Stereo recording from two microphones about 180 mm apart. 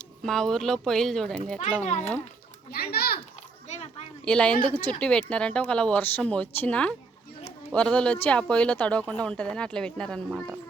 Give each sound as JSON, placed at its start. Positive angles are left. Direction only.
{"t": 0.2, "sound": "speech", "side_deg": 0}
{"t": 1.8, "sound": "a child's voice", "side_deg": 40}
{"t": 2.7, "sound": "a child's voice", "side_deg": 60}
{"t": 4.3, "sound": "speech", "side_deg": 5}